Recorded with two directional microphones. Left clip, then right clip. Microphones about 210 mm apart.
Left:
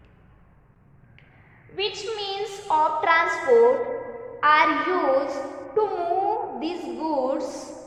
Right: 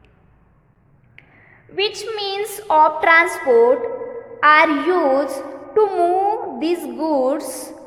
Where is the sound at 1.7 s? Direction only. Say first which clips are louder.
Right 6 dB; 50° right (ahead or behind).